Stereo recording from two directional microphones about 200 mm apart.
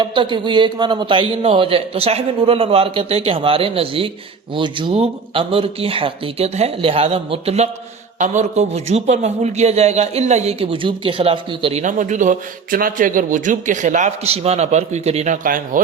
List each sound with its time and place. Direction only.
0.0 s a man's voice: 25° right (ahead or behind); by 15.8 s 45° right (ahead or behind)